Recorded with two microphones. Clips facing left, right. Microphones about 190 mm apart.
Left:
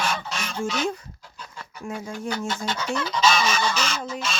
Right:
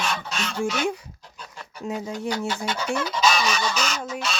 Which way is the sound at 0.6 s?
10° right (ahead or behind).